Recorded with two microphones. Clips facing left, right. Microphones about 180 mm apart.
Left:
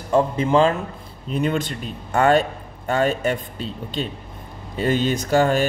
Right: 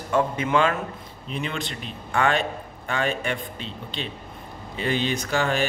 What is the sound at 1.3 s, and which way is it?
A man's voice, 45° left (ahead or behind).